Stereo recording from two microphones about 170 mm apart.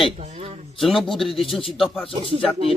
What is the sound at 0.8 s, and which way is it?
Speech, centre (ahead or behind).